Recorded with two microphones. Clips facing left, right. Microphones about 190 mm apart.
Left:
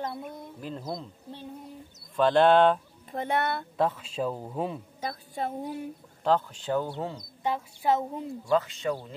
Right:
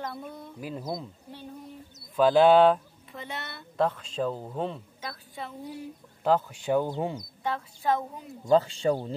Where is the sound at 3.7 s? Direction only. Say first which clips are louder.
Right 3 dB; 5° left (ahead or behind).